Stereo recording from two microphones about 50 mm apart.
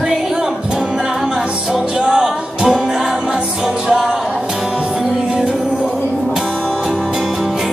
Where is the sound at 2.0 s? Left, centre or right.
Centre.